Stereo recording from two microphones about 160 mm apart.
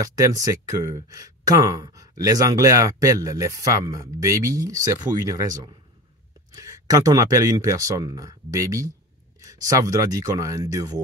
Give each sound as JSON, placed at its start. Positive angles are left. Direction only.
{"t": 0.0, "sound": "speech", "side_deg": -20}